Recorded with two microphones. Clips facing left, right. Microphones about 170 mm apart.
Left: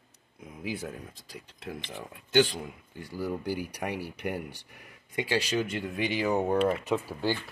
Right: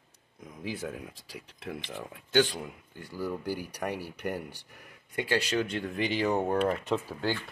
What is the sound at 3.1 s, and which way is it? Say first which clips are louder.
Speech: left 1 dB; 15° left (ahead or behind).